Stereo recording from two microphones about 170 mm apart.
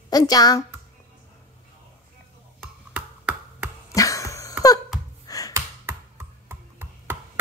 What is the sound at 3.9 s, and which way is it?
Cough, 20° left (ahead or behind).